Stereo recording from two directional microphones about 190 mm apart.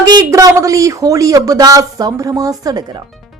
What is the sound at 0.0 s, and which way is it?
Speech, 20° right (ahead or behind).